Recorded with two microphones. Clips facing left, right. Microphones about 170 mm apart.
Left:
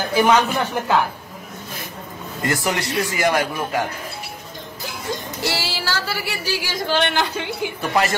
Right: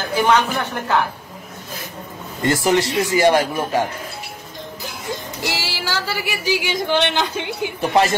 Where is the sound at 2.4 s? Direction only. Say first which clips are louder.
Right 6 dB; 25° right (ahead or behind).